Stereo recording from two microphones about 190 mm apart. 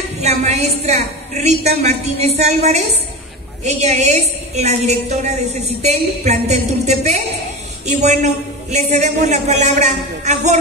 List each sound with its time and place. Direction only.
0.2 s a woman's voice: 35° right (ahead or behind)